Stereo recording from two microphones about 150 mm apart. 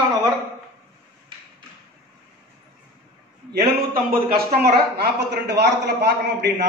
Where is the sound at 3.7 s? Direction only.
90° right.